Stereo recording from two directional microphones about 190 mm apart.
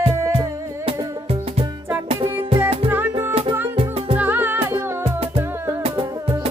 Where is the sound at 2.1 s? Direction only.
15° right (ahead or behind).